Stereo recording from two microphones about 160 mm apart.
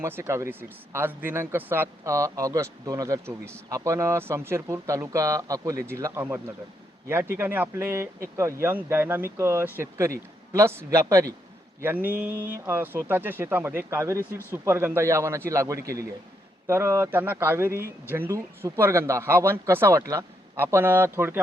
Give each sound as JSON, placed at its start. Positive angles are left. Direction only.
{"t": 0.0, "sound": "speech", "side_deg": -15}